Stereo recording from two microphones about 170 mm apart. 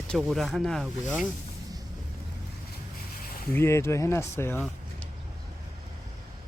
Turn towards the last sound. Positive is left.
turn(degrees=10)  # may be behind; listen again after turning